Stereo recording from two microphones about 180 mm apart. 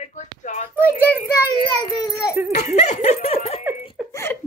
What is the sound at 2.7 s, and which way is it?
Speech, 40° left (ahead or behind).